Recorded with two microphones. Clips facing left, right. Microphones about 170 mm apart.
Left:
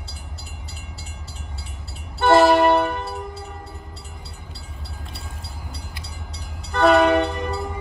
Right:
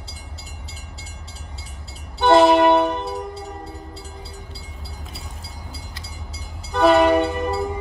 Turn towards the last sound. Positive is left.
turn(degrees=0)  # may be behind; listen again after turning